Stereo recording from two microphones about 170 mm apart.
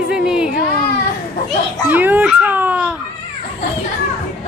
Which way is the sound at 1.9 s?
10° right (ahead or behind).